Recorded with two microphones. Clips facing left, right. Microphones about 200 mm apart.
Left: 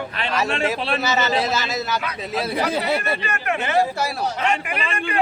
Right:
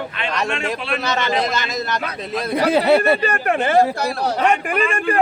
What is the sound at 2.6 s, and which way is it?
Speech, 65° right (ahead or behind).